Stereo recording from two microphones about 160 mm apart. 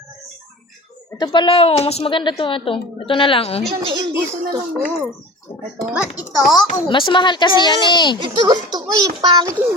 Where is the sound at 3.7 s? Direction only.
35° right (ahead or behind).